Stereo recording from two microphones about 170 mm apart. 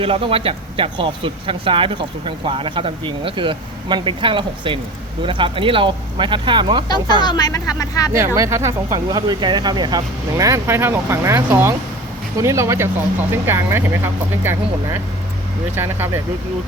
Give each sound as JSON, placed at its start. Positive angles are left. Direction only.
{"t": 0.0, "sound": "speech", "side_deg": -35}
{"t": 6.8, "sound": "speech", "side_deg": 25}
{"t": 8.1, "sound": "speech", "side_deg": -15}